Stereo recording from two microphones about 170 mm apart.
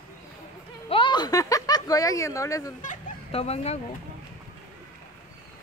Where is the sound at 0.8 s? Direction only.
30° left (ahead or behind).